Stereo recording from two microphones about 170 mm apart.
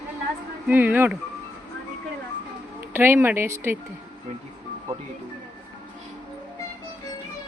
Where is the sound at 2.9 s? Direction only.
15° right (ahead or behind).